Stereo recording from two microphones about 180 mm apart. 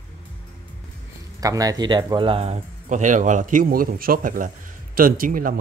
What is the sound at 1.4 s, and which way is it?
A man's voice, 20° right (ahead or behind).